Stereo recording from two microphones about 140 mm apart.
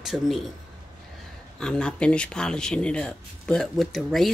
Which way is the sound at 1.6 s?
5° left (ahead or behind).